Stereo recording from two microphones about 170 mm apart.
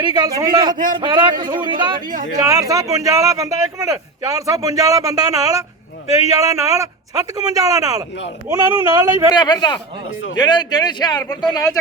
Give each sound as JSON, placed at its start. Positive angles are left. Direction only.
{"t": 0.0, "sound": "a man's voice", "side_deg": -25}
{"t": 9.3, "sound": "speech", "side_deg": 25}